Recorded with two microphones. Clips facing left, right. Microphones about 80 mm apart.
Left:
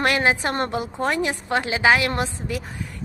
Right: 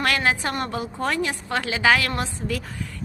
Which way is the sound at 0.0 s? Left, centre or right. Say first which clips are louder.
Left 2 dB; centre.